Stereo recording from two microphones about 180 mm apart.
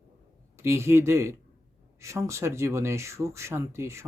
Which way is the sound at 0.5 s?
15° right (ahead or behind).